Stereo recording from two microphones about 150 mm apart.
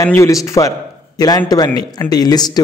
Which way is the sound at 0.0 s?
20° left (ahead or behind).